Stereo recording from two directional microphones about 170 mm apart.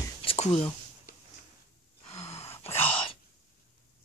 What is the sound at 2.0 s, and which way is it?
Gasp, 40° left (ahead or behind).